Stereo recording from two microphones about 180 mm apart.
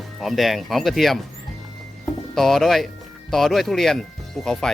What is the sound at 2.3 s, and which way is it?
Speech, centre (ahead or behind).